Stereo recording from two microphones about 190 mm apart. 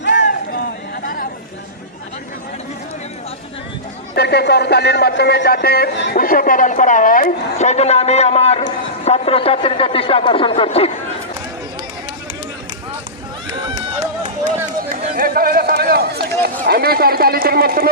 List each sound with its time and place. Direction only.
0.0 s a sound: 70° left (ahead or behind)
4.1 s speech: 60° left (ahead or behind); by 10.9 s 30° left (ahead or behind)
14.4 s run: 45° right (ahead or behind)